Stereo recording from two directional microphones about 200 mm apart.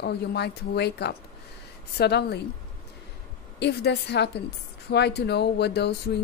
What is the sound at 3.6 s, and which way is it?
Speech, 55° left (ahead or behind).